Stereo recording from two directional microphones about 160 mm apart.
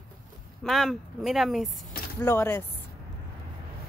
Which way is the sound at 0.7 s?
Centre (ahead or behind).